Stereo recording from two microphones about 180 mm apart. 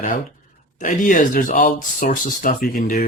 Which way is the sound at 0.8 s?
45° left (ahead or behind).